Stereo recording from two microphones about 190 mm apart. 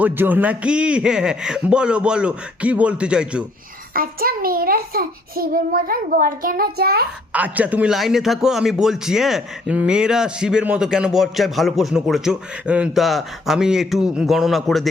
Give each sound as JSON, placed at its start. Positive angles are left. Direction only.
{"t": 0.0, "sound": "speech", "side_deg": -10}
{"t": 3.9, "sound": "a child's voice", "side_deg": -50}
{"t": 7.3, "sound": "speech", "side_deg": -10}